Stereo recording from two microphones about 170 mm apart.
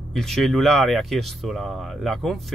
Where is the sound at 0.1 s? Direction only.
Centre (ahead or behind).